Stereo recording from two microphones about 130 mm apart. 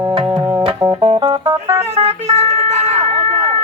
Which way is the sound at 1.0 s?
50° right (ahead or behind).